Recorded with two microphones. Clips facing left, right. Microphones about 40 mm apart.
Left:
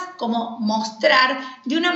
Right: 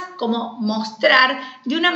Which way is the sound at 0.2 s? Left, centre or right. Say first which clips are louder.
Right 1 dB; right.